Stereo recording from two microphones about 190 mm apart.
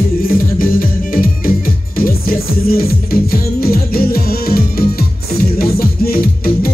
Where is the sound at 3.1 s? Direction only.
50° left (ahead or behind).